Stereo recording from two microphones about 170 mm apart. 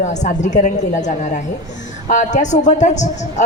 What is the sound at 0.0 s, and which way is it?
A woman's voice, 45° left (ahead or behind).